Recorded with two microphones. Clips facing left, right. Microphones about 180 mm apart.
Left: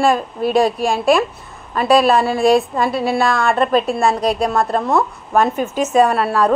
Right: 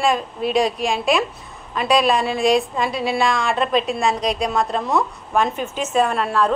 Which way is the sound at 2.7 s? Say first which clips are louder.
Left 4 dB; 55° left (ahead or behind).